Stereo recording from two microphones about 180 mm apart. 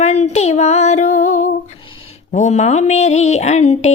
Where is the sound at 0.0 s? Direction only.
35° left (ahead or behind).